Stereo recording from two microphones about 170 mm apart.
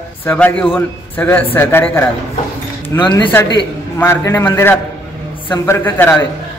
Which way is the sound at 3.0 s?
25° left (ahead or behind).